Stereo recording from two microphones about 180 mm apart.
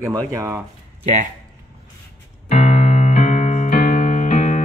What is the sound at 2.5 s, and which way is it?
Keyboard, 35° left (ahead or behind).